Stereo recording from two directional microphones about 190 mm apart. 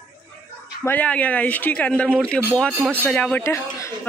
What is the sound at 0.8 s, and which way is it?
Speech, 10° left (ahead or behind).